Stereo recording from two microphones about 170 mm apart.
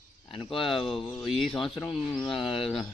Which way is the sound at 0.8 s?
Centre (ahead or behind).